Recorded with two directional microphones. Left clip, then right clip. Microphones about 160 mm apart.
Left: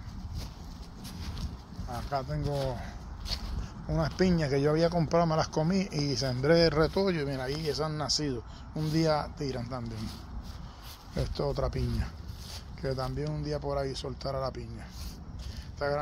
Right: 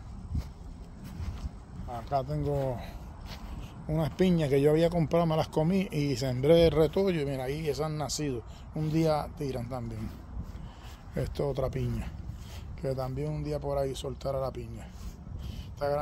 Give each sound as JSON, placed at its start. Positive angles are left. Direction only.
{"t": 1.9, "sound": "speech", "side_deg": -20}
{"t": 3.9, "sound": "speech", "side_deg": -30}
{"t": 11.1, "sound": "speech", "side_deg": -10}
{"t": 15.8, "sound": "speech", "side_deg": -10}